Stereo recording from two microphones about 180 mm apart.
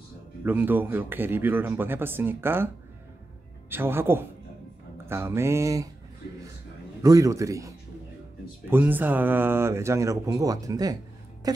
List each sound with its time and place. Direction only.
0.4 s speech: 10° right (ahead or behind)
3.7 s speech: 10° right (ahead or behind)
7.0 s speech: 20° right (ahead or behind)